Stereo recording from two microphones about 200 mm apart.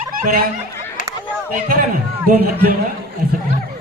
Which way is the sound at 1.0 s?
40° left (ahead or behind).